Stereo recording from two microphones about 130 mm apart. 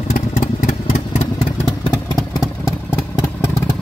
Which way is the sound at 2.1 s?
5° right (ahead or behind).